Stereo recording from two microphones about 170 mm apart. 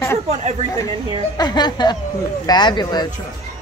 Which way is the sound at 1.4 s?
25° left (ahead or behind).